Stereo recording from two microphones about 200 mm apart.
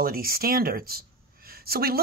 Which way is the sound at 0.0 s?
45° right (ahead or behind).